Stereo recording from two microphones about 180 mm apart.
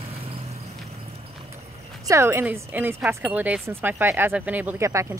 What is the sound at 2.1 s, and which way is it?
Speech, 15° right (ahead or behind).